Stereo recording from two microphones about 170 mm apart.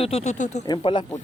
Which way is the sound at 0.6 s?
25° left (ahead or behind).